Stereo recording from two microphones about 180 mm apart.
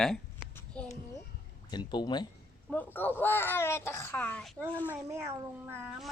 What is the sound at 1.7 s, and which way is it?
Speech, 25° left (ahead or behind).